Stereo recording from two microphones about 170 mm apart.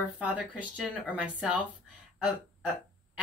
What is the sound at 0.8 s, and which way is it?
Speech, 5° right (ahead or behind).